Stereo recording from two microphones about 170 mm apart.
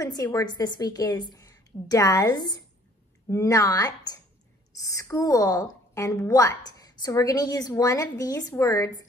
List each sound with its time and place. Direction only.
0.0 s a woman's voice: 20° left (ahead or behind)